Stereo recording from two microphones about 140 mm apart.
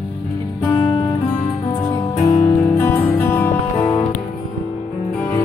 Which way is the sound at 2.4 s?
15° left (ahead or behind).